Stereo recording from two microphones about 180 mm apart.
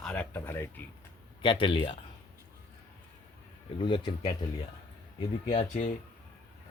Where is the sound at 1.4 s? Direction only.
30° left (ahead or behind).